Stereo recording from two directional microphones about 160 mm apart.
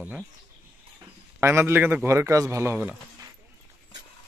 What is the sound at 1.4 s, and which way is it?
Speech, 15° right (ahead or behind).